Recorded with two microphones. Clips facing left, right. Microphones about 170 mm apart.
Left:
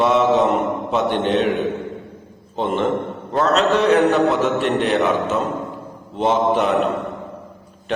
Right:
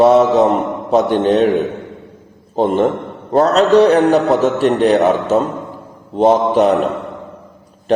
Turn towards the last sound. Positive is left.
turn(degrees=-40)  # may be behind; listen again after turning